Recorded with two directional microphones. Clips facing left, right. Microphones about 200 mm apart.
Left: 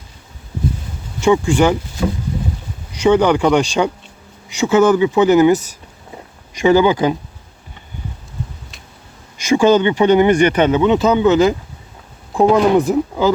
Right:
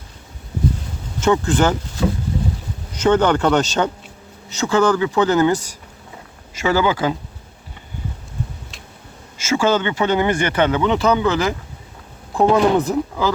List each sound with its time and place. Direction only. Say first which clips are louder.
1.2 s speech: left 3 dB; 10° left (ahead or behind)
3.0 s speech: left 3 dB; 10° left (ahead or behind)
9.4 s speech: left 6 dB; 15° left (ahead or behind)